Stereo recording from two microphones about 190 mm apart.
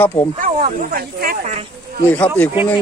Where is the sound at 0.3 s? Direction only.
50° right (ahead or behind).